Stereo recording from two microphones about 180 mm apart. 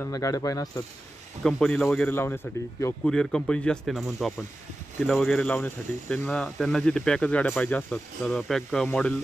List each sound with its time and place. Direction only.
0.0 s speech: 20° left (ahead or behind)
1.4 s speech: 5° left (ahead or behind)